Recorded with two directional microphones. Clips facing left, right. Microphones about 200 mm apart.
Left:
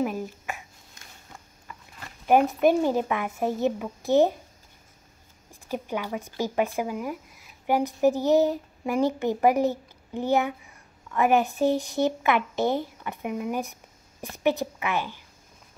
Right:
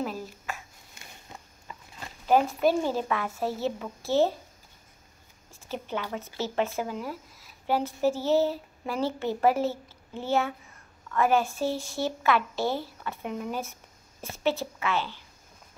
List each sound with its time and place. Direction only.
0.0 s a sound: 15° left (ahead or behind)
2.2 s a woman's voice: 15° left (ahead or behind)
5.5 s a woman's voice: 10° left (ahead or behind)